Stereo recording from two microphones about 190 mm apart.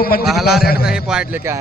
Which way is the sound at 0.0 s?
50° left (ahead or behind).